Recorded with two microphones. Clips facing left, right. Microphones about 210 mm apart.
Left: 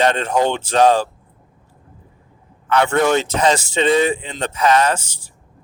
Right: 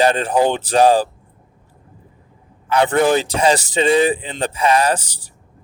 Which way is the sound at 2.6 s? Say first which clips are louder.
Right 1 dB; 30° right (ahead or behind).